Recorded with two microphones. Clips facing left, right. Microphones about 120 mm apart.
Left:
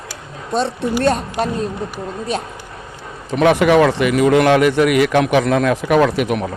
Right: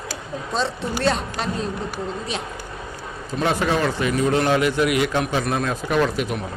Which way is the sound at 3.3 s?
80° left.